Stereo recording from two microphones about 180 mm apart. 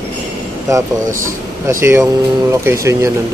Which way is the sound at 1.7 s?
15° right (ahead or behind).